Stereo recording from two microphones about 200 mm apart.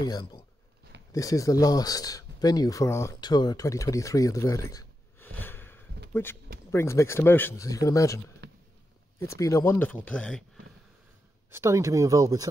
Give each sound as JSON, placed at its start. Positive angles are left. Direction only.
{"t": 0.0, "sound": "speech", "side_deg": 20}
{"t": 8.4, "sound": "a sound", "side_deg": -55}
{"t": 9.2, "sound": "speech", "side_deg": 15}
{"t": 11.5, "sound": "speech", "side_deg": -15}